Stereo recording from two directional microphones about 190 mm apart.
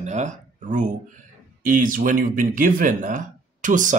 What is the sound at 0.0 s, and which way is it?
Speech, 40° right (ahead or behind).